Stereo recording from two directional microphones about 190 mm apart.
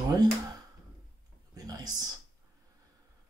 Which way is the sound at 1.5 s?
20° right (ahead or behind).